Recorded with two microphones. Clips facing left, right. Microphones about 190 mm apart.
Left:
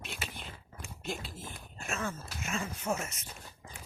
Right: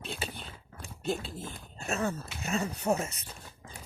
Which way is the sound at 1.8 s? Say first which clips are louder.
Right 5 dB; 35° right (ahead or behind).